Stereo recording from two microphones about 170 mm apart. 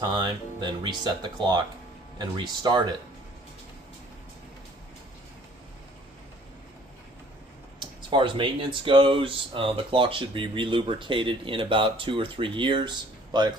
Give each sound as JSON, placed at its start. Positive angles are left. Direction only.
{"t": 0.0, "sound": "speech", "side_deg": -25}
{"t": 8.1, "sound": "speech", "side_deg": -30}